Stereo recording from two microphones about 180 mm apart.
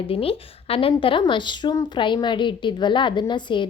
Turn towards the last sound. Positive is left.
turn(degrees=25)  # may be behind; listen again after turning